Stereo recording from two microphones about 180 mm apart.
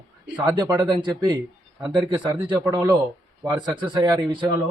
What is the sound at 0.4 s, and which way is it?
A man's voice, 20° right (ahead or behind).